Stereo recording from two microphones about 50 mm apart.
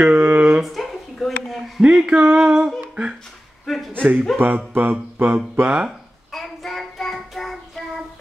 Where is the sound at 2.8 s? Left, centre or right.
Right.